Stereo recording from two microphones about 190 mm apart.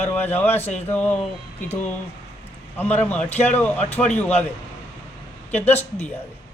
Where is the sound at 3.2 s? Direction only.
35° left (ahead or behind).